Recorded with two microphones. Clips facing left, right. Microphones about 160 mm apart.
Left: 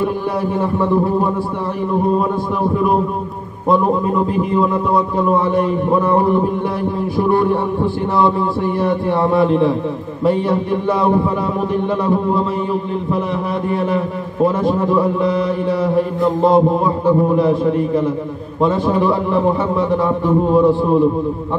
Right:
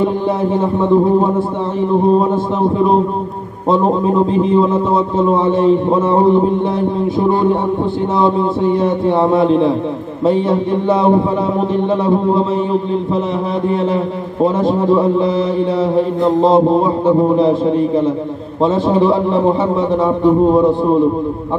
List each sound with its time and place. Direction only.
0.0 s a man's voice: 20° right (ahead or behind)
13.7 s a man's voice: 25° right (ahead or behind)